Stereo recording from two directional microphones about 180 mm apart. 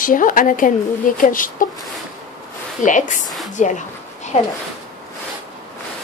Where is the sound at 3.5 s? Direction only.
45° left (ahead or behind).